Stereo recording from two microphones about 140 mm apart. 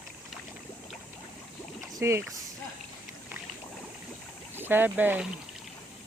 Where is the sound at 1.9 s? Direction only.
20° right (ahead or behind).